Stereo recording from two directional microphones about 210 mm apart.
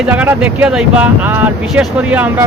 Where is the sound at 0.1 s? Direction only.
5° right (ahead or behind).